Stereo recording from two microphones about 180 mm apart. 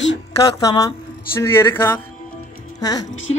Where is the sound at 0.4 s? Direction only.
20° left (ahead or behind).